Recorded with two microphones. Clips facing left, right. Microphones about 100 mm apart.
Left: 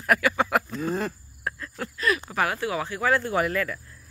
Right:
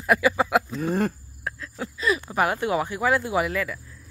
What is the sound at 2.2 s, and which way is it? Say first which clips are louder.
Speech: right 3 dB; 20° right (ahead or behind).